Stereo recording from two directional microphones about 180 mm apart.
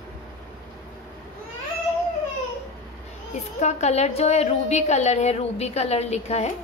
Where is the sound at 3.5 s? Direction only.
40° left (ahead or behind).